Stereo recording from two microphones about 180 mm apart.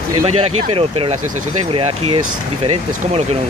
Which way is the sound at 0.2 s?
35° right (ahead or behind).